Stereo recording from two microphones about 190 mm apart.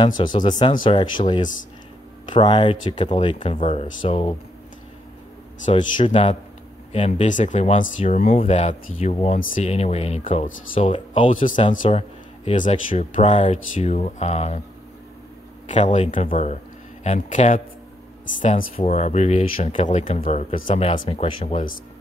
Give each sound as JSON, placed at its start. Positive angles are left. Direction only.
{"t": 0.2, "sound": "speech", "side_deg": 25}
{"t": 5.8, "sound": "speech", "side_deg": 35}
{"t": 10.7, "sound": "speech", "side_deg": 30}
{"t": 15.7, "sound": "speech", "side_deg": 40}